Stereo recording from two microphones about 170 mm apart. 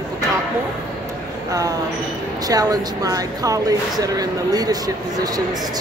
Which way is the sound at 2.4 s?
20° right (ahead or behind).